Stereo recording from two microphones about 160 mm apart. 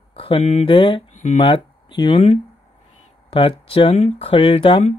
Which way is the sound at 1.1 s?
45° left (ahead or behind).